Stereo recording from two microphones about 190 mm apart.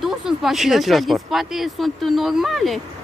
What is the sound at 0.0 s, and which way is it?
Speech, centre (ahead or behind).